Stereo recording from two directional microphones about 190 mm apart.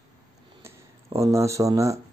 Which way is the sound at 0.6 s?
15° right (ahead or behind).